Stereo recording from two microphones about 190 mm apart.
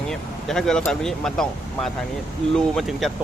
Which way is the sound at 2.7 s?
Centre (ahead or behind).